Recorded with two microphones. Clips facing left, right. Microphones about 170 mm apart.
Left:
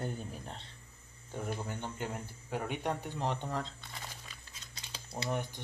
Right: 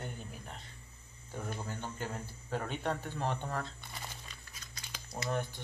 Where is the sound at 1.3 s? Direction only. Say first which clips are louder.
Left 2 dB; 20° left (ahead or behind).